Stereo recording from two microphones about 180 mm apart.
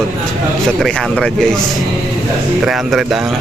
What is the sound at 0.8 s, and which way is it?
Speech, 5° left (ahead or behind).